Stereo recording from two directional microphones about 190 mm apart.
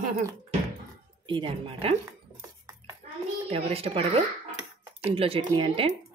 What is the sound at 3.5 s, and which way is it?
A woman's voice, 30° right (ahead or behind).